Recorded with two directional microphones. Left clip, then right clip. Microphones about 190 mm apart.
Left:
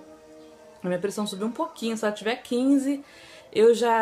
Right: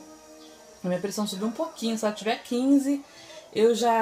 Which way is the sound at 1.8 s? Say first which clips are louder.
Left 1 dB; 20° left (ahead or behind).